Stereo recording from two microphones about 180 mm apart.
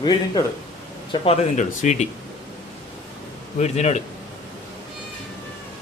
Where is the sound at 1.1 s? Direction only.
35° left (ahead or behind).